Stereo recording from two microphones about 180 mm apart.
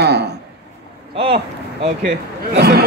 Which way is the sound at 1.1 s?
30° right (ahead or behind).